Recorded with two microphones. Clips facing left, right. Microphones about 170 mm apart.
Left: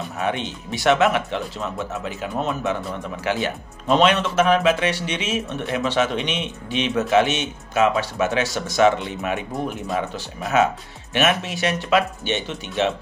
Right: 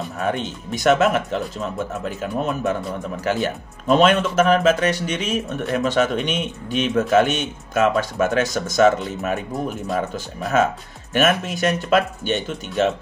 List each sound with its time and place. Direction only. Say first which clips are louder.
0.2 s speech: right 1 dB; 45° right (ahead or behind)